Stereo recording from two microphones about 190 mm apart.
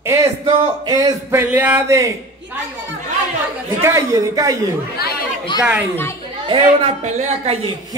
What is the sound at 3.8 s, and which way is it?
Speech, 15° right (ahead or behind).